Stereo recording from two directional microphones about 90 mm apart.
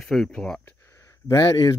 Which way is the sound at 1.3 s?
35° left (ahead or behind).